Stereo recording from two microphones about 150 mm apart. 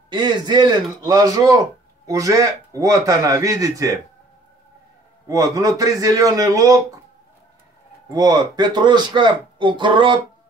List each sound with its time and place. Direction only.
0.1 s a man's voice: 30° right (ahead or behind)
5.3 s a man's voice: 25° right (ahead or behind)
8.1 s speech: 25° right (ahead or behind)